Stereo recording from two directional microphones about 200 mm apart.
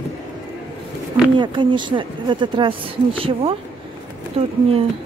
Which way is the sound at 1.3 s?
25° right (ahead or behind).